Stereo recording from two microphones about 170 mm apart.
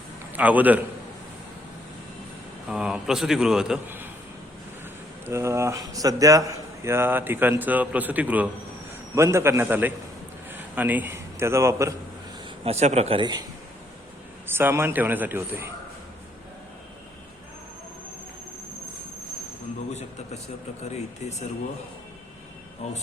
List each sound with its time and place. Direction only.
0.3 s speech: 10° right (ahead or behind)
2.6 s a man's voice: 5° right (ahead or behind)
5.2 s a man's voice: 15° right (ahead or behind)
12.6 s a man's voice: 40° right (ahead or behind)
14.4 s speech: 10° right (ahead or behind)
19.9 s a sound: 40° left (ahead or behind)
20.9 s speech: 40° left (ahead or behind)